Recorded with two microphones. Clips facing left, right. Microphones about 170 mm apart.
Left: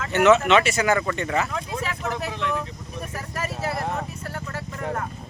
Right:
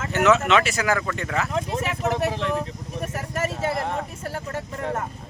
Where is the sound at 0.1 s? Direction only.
Centre (ahead or behind).